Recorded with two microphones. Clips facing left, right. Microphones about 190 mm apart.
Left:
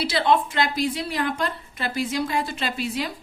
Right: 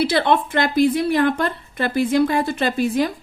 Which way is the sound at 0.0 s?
55° right (ahead or behind).